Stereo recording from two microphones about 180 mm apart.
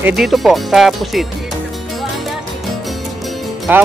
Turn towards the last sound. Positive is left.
turn(degrees=-10)  # may be behind; listen again after turning